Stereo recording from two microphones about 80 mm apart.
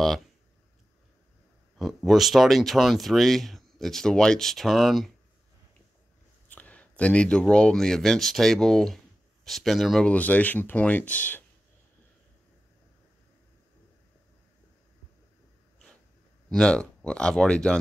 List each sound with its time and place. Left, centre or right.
1.8 s speech: centre
6.5 s speech: centre
10.0 s speech: centre
16.4 s speech: centre